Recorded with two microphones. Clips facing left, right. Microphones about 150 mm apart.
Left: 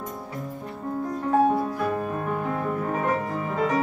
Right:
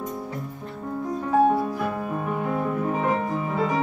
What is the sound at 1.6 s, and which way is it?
Music, centre (ahead or behind).